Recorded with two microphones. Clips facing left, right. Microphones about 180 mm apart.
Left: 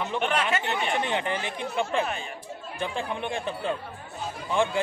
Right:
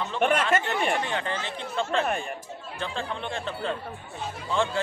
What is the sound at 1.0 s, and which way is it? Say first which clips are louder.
Speech: left 2 dB; 15° left (ahead or behind).